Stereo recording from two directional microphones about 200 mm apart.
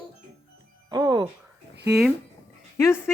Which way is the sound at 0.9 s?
20° right (ahead or behind).